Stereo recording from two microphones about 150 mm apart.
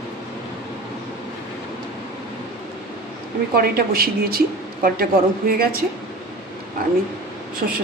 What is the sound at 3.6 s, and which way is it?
Speech, 90° right.